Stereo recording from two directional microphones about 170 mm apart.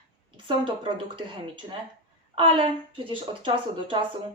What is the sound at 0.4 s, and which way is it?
A woman's voice, 30° right (ahead or behind).